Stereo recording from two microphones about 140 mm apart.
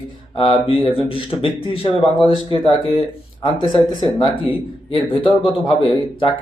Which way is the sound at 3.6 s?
35° left (ahead or behind).